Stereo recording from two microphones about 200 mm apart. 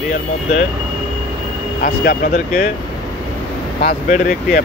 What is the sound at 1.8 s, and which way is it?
Speech, 50° left (ahead or behind).